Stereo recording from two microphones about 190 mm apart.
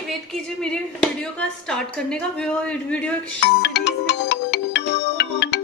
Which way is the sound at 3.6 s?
65° left (ahead or behind).